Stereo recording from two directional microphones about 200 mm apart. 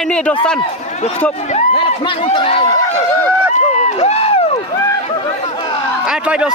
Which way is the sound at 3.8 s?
35° left (ahead or behind).